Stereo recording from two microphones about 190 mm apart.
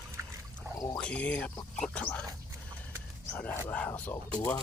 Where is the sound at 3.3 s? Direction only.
10° left (ahead or behind).